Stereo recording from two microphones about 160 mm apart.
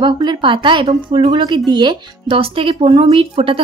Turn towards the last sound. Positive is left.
turn(degrees=-35)  # may be behind; listen again after turning